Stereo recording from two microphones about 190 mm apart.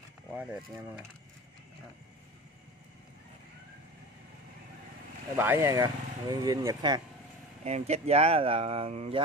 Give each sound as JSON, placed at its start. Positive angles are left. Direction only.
{"t": 0.3, "sound": "speech", "side_deg": -10}
{"t": 5.3, "sound": "speech", "side_deg": -10}
{"t": 7.6, "sound": "speech", "side_deg": -35}